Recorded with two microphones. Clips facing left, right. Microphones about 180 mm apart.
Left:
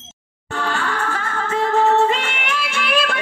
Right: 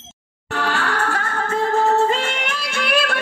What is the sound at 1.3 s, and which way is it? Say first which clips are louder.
Music: left 2 dB; 40° right (ahead or behind).